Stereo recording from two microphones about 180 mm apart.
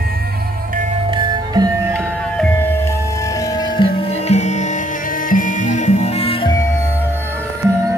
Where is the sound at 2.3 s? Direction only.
10° left (ahead or behind).